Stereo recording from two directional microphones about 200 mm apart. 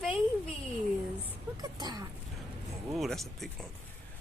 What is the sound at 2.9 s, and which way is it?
Speech, centre (ahead or behind).